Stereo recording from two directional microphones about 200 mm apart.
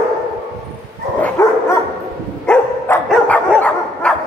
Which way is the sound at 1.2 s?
15° left (ahead or behind).